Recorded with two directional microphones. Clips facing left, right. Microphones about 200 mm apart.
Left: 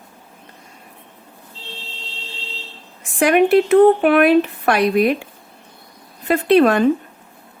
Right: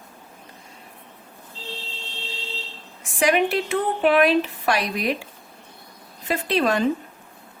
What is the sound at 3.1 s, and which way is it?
A woman's voice, 55° left (ahead or behind).